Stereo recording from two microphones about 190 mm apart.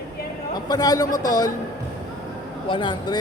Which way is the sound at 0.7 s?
20° left (ahead or behind).